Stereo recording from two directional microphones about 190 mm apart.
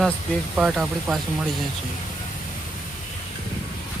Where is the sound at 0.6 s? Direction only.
5° right (ahead or behind).